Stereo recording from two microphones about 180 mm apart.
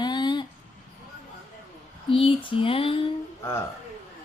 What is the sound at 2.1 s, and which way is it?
Speech, 30° left (ahead or behind).